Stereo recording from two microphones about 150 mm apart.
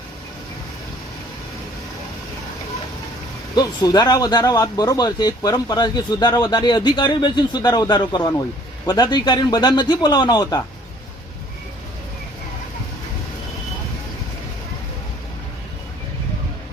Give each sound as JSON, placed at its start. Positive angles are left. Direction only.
{"t": 3.5, "sound": "speech", "side_deg": 25}